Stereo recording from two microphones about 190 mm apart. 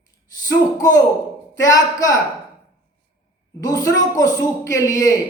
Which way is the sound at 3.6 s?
20° left (ahead or behind).